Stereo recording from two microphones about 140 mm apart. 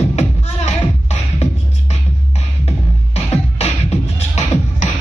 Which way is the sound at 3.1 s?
50° left (ahead or behind).